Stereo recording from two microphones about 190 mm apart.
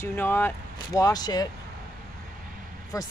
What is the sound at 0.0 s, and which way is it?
Speech, 10° left (ahead or behind).